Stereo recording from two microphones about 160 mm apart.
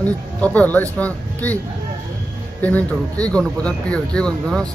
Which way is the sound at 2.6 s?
10° left (ahead or behind).